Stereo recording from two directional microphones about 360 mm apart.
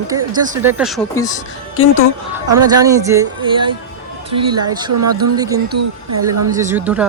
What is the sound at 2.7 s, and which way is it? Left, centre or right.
A woman's voice, centre.